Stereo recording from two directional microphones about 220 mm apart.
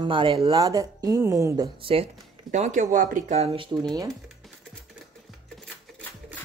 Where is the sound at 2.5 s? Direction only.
35° right (ahead or behind).